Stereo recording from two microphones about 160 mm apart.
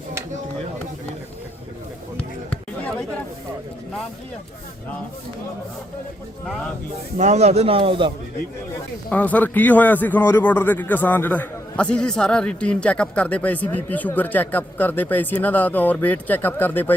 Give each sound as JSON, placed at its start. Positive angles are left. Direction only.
{"t": 7.2, "sound": "a man's voice", "side_deg": -45}
{"t": 9.0, "sound": "a man's voice", "side_deg": 10}